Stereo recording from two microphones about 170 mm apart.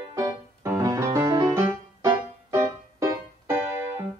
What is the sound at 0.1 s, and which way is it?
Music, 15° right (ahead or behind).